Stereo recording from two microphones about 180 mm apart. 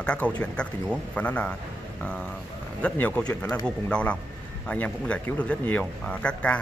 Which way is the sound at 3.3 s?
20° left (ahead or behind).